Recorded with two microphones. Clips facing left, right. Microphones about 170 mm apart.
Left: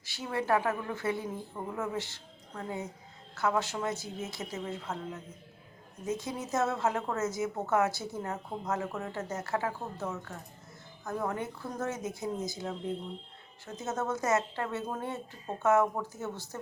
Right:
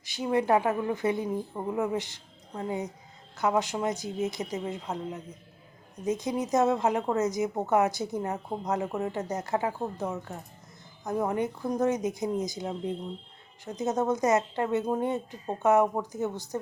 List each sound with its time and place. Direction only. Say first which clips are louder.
0.0 s a woman's voice: right 7 dB; 15° right (ahead or behind)